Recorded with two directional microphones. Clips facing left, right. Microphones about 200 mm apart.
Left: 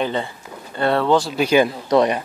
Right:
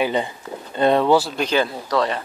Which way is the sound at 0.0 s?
15° right (ahead or behind).